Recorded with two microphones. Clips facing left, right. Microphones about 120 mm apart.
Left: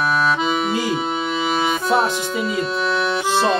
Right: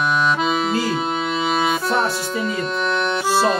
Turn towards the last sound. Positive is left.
turn(degrees=-5)  # may be behind; listen again after turning